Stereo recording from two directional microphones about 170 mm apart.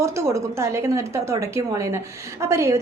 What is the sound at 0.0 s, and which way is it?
A woman's voice, 15° right (ahead or behind).